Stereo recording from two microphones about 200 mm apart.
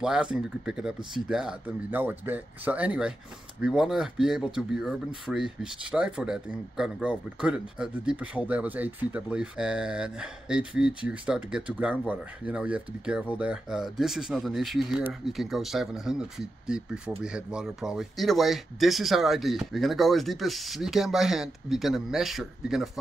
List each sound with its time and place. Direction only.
0.0 s speech: 5° right (ahead or behind)